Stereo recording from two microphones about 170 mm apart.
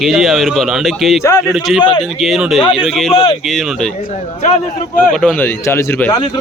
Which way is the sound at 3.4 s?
Centre (ahead or behind).